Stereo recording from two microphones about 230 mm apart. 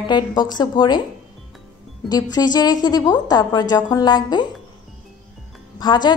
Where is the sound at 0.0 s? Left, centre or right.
Centre.